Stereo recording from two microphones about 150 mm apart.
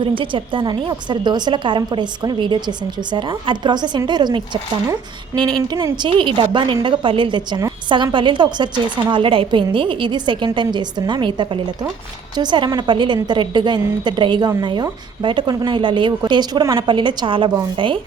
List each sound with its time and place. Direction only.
0.0 s a woman's voice: 35° right (ahead or behind)